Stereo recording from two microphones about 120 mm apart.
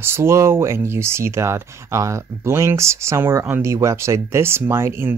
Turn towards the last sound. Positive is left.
turn(degrees=-20)  # may be behind; listen again after turning